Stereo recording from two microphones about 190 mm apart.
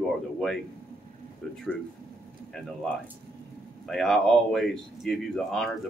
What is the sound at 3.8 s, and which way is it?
Speech, centre (ahead or behind).